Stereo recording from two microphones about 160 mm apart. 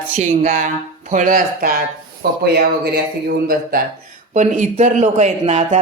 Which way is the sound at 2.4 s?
80° right.